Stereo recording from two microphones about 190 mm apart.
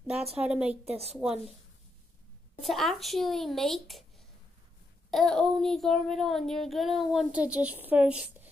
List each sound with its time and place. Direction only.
0.2 s a woman's voice: 30° right (ahead or behind)
0.5 s child singing: 5° right (ahead or behind)
0.8 s a woman's voice: 35° right (ahead or behind)
1.1 s child singing: 5° right (ahead or behind)
2.6 s child singing: centre (ahead or behind)
5.1 s child singing: centre (ahead or behind)